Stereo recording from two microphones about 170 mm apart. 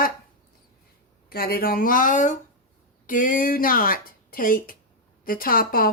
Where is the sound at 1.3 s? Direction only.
65° left (ahead or behind).